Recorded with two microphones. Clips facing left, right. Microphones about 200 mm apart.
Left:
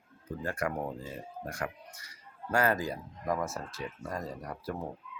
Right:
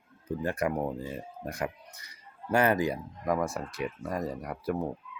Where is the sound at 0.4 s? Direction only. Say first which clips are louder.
Right 4 dB; 20° right (ahead or behind).